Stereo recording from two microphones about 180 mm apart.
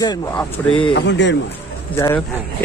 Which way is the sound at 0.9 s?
75° left (ahead or behind).